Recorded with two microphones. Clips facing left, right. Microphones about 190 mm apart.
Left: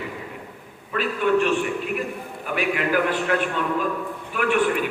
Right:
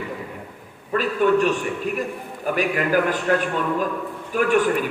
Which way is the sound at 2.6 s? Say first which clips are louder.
Right 1 dB; 40° right (ahead or behind).